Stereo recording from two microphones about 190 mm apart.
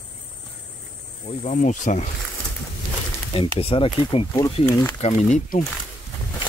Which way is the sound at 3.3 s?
30° left (ahead or behind).